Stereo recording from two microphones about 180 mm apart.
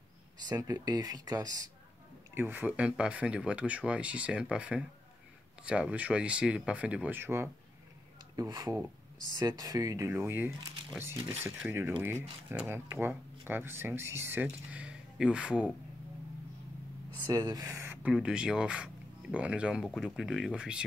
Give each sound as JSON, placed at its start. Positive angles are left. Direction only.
{"t": 0.5, "sound": "speech", "side_deg": -20}
{"t": 8.4, "sound": "speech", "side_deg": -25}
{"t": 17.2, "sound": "speech", "side_deg": -20}